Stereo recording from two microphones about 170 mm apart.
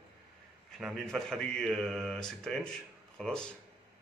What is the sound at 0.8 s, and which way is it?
A man's voice, centre (ahead or behind).